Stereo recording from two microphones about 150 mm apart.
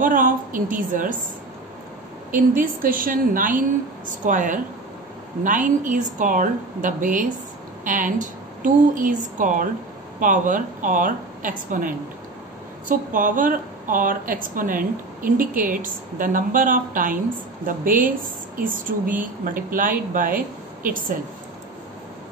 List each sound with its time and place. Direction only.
0.0 s speech: 65° right (ahead or behind)
2.3 s a woman's voice: 65° right (ahead or behind)